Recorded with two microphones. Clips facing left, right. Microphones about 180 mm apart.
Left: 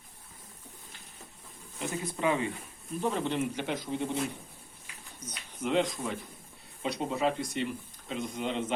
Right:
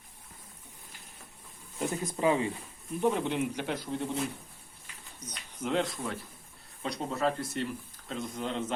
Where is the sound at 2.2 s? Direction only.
30° right (ahead or behind).